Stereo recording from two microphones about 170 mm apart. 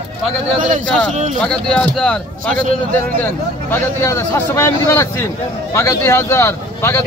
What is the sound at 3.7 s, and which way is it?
A man's voice, 15° left (ahead or behind).